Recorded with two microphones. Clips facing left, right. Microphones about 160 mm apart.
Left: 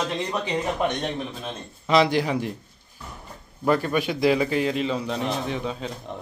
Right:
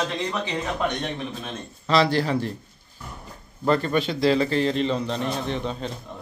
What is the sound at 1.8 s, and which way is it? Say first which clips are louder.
Speech: left 1 dB; 15° left (ahead or behind).